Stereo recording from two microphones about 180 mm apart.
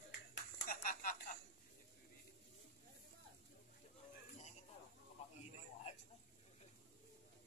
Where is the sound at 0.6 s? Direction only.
50° left (ahead or behind).